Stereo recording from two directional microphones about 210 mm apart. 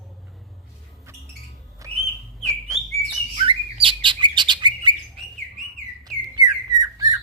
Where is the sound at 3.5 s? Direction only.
25° right (ahead or behind).